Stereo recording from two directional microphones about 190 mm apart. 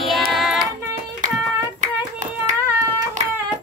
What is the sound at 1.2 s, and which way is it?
Hands, 40° right (ahead or behind).